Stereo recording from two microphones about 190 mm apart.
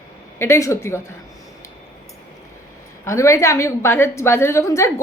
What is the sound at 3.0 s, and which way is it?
A woman's voice, 15° left (ahead or behind).